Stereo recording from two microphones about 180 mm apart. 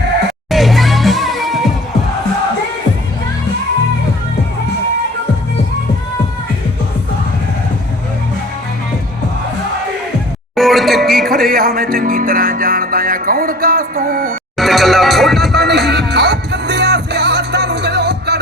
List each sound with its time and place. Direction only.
0.5 s music: centre (ahead or behind)
10.5 s music: centre (ahead or behind)
11.3 s music: 55° right (ahead or behind)
14.6 s neigh: centre (ahead or behind)
15.5 s music: 65° right (ahead or behind)